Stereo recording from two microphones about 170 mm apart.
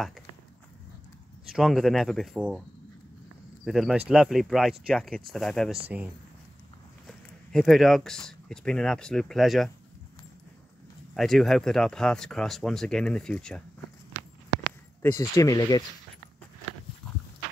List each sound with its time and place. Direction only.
1.5 s speech: centre (ahead or behind)
3.6 s speech: centre (ahead or behind)
7.1 s speech: centre (ahead or behind)
11.1 s speech: centre (ahead or behind)
15.0 s speech: 15° left (ahead or behind)